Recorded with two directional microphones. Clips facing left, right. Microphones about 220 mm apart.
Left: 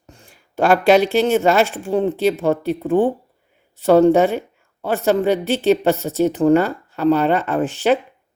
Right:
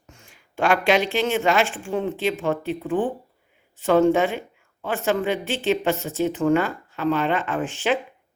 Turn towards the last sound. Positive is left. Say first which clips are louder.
# left 6 dB
turn(degrees=40)  # may be behind; listen again after turning